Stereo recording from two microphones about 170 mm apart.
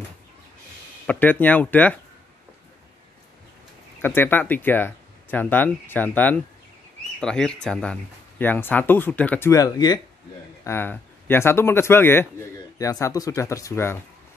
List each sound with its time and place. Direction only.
1.0 s speech: 10° left (ahead or behind)
4.0 s speech: 15° left (ahead or behind)